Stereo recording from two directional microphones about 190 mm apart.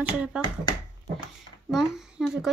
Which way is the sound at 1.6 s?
Centre (ahead or behind).